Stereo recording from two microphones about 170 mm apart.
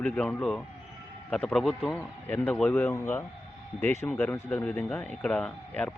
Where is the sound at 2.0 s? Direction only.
10° left (ahead or behind).